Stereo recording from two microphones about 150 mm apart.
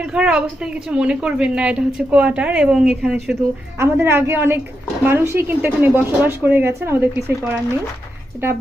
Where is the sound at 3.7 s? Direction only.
15° right (ahead or behind).